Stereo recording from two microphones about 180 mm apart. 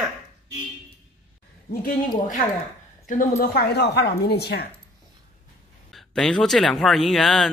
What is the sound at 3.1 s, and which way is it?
Speech, 45° left (ahead or behind).